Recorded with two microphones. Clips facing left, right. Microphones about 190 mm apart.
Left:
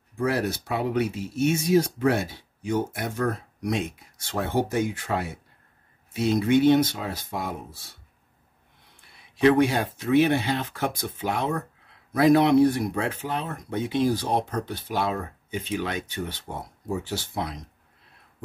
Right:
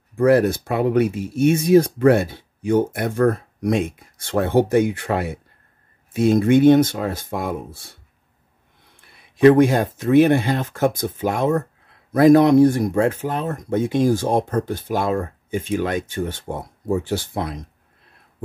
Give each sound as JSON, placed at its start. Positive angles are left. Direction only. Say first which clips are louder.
{"t": 0.2, "sound": "speech", "louder": "right 10 dB", "side_deg": -55}
{"t": 6.1, "sound": "speech", "louder": "right 6 dB", "side_deg": -50}
{"t": 9.4, "sound": "speech", "louder": "right 7 dB", "side_deg": -45}